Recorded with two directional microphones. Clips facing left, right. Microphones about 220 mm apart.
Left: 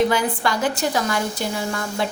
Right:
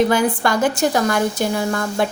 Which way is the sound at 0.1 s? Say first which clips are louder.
Right 4 dB; 50° right (ahead or behind).